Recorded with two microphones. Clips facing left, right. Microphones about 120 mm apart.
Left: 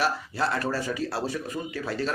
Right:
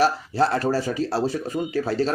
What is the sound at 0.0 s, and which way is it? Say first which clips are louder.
A man's voice: right 7 dB; 35° right (ahead or behind).